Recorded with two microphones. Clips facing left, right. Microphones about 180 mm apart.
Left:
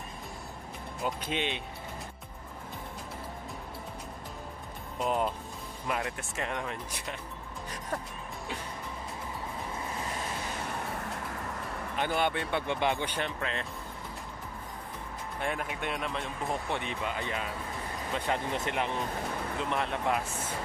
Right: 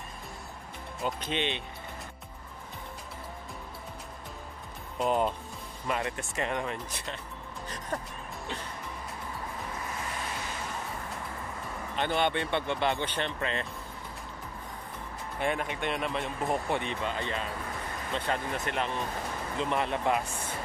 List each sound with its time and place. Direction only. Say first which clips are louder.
1.0 s speech: right 1 dB; 5° left (ahead or behind)
4.9 s speech: right 2 dB; centre (ahead or behind)
12.0 s speech: right 1 dB; 5° left (ahead or behind)
13.4 s speech: right 2 dB; centre (ahead or behind)
15.4 s speech: right 3 dB; centre (ahead or behind); by 18.9 s 15° left (ahead or behind)
19.6 s speech: right 3 dB; centre (ahead or behind)